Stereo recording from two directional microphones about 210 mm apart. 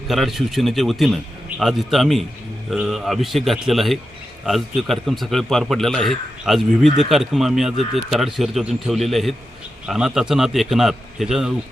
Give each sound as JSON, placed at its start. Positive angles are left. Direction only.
{"t": 0.1, "sound": "a man's voice", "side_deg": 0}